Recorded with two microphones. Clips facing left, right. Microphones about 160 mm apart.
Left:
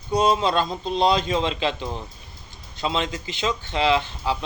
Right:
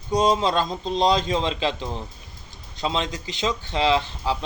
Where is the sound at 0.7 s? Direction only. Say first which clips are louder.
Even; 5° left (ahead or behind).